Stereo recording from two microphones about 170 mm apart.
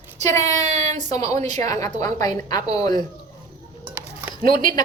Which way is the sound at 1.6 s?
20° left (ahead or behind).